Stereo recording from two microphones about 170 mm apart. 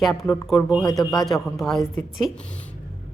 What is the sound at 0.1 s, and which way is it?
A man's voice, 20° left (ahead or behind).